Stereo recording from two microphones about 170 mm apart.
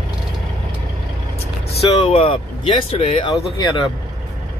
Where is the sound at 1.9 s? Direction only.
35° left (ahead or behind).